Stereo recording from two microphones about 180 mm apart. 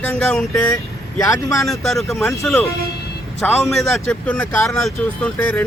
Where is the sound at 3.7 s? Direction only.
Centre (ahead or behind).